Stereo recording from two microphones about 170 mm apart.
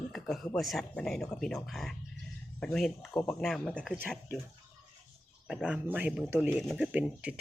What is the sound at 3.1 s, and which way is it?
Speech, 20° left (ahead or behind).